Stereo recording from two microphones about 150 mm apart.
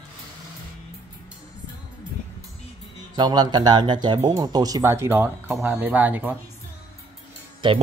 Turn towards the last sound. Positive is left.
turn(degrees=-35)  # may be behind; listen again after turning